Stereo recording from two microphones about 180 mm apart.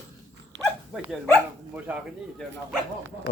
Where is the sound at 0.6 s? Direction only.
Centre (ahead or behind).